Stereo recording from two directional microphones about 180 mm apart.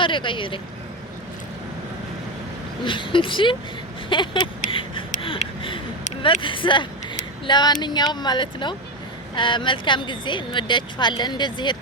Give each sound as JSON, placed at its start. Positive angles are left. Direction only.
{"t": 0.0, "sound": "speech", "side_deg": 25}
{"t": 2.8, "sound": "speech", "side_deg": 25}
{"t": 4.1, "sound": "a sound", "side_deg": 25}
{"t": 6.2, "sound": "speech", "side_deg": 30}